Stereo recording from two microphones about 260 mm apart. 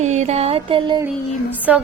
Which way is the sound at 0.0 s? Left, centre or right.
Right.